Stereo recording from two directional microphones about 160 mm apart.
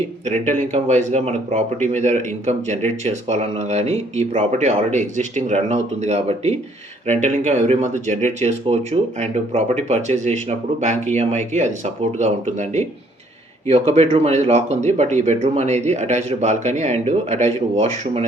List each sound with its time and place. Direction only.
0.3 s speech: 45° right (ahead or behind)